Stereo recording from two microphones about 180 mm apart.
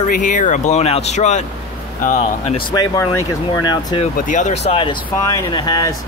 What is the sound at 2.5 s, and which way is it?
Speech, 25° left (ahead or behind).